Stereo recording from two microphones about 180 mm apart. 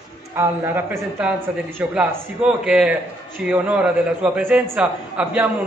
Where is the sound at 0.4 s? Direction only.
10° right (ahead or behind).